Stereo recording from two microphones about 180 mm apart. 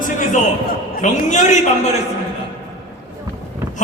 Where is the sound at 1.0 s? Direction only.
45° left (ahead or behind).